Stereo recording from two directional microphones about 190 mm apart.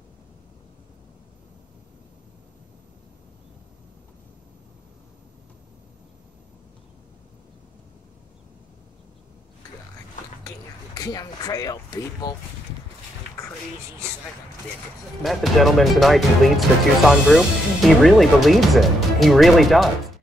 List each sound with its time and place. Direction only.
11.0 s speech: 20° left (ahead or behind)
15.2 s speech: centre (ahead or behind)